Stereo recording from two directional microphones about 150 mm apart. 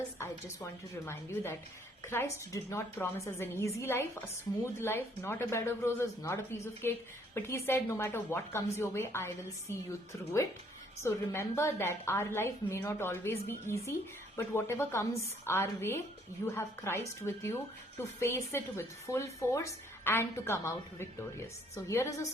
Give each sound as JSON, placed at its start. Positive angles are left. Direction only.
{"t": 0.2, "sound": "a woman's voice", "side_deg": 15}
{"t": 4.8, "sound": "speech", "side_deg": 15}